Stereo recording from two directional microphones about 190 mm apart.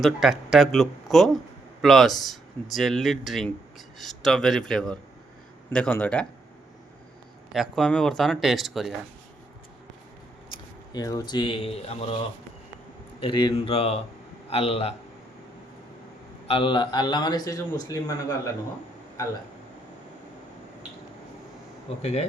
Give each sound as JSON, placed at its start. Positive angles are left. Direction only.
{"t": 0.0, "sound": "speech", "side_deg": 0}
{"t": 7.5, "sound": "speech", "side_deg": 0}
{"t": 10.9, "sound": "a man's voice", "side_deg": 20}
{"t": 13.1, "sound": "a man's voice", "side_deg": 25}
{"t": 16.5, "sound": "a man's voice", "side_deg": 25}
{"t": 22.0, "sound": "a man's voice", "side_deg": 35}